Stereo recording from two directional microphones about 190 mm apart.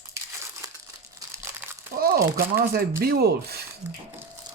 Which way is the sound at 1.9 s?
50° right (ahead or behind).